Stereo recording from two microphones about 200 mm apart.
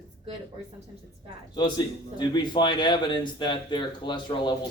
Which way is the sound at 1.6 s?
20° left (ahead or behind).